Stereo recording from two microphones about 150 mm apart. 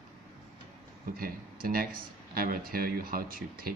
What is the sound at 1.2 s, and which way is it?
Speech, 80° right.